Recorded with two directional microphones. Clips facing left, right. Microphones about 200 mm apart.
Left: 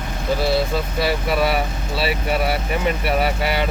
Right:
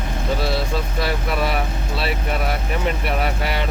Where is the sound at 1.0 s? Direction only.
5° left (ahead or behind).